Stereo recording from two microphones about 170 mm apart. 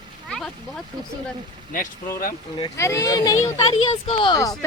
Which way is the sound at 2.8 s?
15° left (ahead or behind).